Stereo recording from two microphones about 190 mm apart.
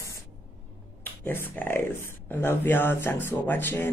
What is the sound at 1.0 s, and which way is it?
Speech, 10° left (ahead or behind).